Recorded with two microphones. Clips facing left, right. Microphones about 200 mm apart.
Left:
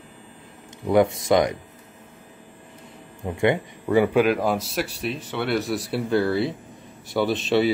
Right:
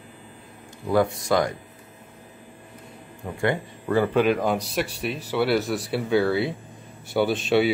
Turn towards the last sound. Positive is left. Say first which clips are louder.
# even
turn(degrees=0)  # may be behind; listen again after turning